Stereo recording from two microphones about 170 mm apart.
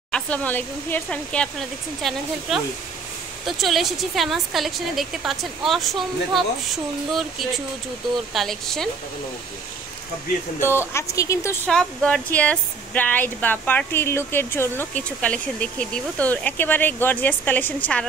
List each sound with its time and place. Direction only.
0.1 s a woman's voice: 10° left (ahead or behind)
3.4 s a woman's voice: centre (ahead or behind)
10.9 s speech: 15° left (ahead or behind)
11.6 s speech: 5° left (ahead or behind)